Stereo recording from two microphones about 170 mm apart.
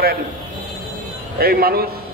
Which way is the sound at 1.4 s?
65° right (ahead or behind).